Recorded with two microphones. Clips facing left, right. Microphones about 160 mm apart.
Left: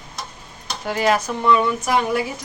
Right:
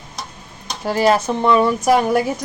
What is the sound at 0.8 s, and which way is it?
Speech, 35° right (ahead or behind).